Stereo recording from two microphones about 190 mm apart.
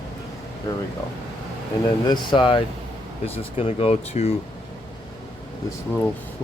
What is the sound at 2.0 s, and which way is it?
Speech, 25° left (ahead or behind).